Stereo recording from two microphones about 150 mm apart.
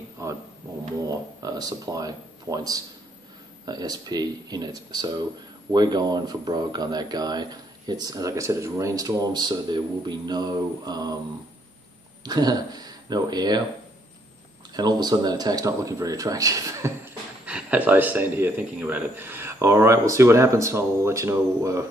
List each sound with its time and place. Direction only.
0.2 s a sound: 20° right (ahead or behind)
1.0 s speech: 25° right (ahead or behind)
12.3 s speech: 25° right (ahead or behind)
14.7 s speech: 25° right (ahead or behind)
17.5 s speech: 10° right (ahead or behind)